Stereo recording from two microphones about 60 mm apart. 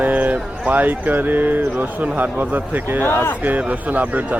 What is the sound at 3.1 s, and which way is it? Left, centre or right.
Speech, left.